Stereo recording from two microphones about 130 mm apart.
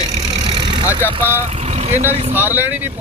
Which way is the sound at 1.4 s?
55° right (ahead or behind).